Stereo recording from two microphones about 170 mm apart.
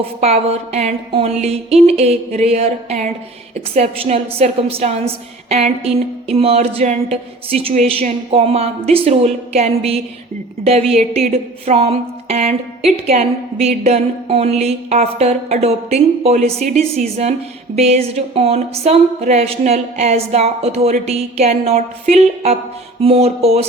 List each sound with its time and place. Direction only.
0.2 s a woman's voice: 40° right (ahead or behind)
17.7 s a woman's voice: 40° right (ahead or behind)